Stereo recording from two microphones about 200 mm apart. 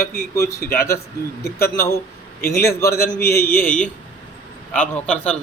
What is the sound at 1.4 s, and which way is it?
A man's voice, 15° left (ahead or behind).